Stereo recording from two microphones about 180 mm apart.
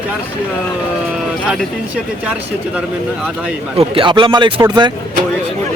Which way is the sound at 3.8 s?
30° right (ahead or behind).